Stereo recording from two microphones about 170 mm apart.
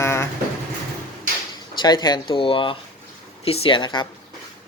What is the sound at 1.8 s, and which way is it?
Speech, 25° left (ahead or behind).